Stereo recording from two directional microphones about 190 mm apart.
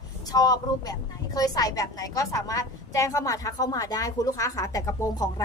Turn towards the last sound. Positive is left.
turn(degrees=15)  # may be behind; listen again after turning